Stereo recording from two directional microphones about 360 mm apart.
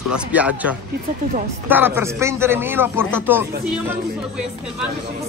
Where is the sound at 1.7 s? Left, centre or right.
Centre.